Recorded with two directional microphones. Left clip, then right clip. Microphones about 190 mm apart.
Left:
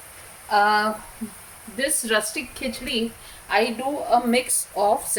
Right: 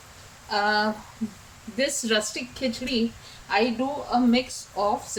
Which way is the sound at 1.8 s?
5° right (ahead or behind).